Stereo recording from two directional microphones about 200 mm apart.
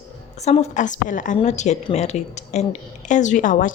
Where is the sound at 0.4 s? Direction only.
35° left (ahead or behind).